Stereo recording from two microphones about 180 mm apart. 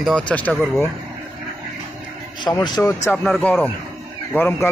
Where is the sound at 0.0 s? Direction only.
5° left (ahead or behind).